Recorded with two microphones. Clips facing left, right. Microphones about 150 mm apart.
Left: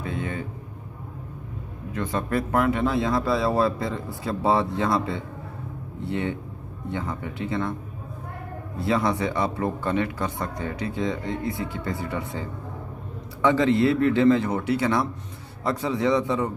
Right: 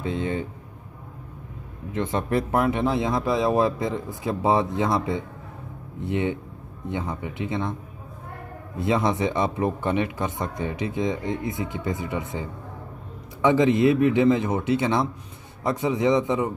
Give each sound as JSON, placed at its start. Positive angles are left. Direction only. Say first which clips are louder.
{"t": 0.0, "sound": "a sound", "louder": "right 3 dB", "side_deg": -20}
{"t": 1.9, "sound": "speech", "louder": "right 2 dB", "side_deg": -20}
{"t": 8.7, "sound": "speech", "louder": "right 1 dB", "side_deg": -20}